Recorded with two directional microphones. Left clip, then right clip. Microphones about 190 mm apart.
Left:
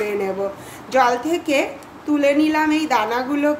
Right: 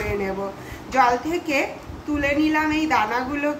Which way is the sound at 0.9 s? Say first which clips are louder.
Left 2 dB; 50° left (ahead or behind).